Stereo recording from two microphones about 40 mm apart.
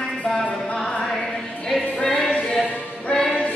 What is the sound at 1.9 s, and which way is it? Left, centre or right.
Music, left.